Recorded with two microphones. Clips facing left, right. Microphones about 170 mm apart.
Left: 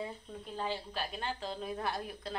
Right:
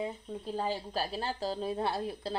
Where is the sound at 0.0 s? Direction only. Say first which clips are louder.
Right 5 dB; 20° right (ahead or behind).